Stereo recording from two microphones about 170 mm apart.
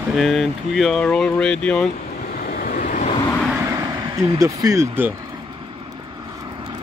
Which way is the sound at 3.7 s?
20° right (ahead or behind).